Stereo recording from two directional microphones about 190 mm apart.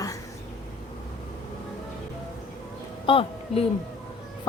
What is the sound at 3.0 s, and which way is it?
Speech, 30° left (ahead or behind).